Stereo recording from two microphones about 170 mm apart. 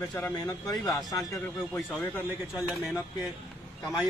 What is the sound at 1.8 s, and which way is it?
A man's voice, centre (ahead or behind).